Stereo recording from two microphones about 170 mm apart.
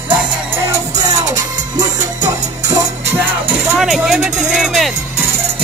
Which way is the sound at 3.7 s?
Centre (ahead or behind).